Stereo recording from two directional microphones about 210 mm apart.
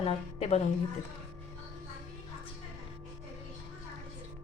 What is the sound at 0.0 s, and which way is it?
Speech, 30° left (ahead or behind).